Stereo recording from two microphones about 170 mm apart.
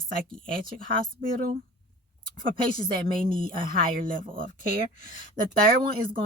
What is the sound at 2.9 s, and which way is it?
Speech, 30° right (ahead or behind).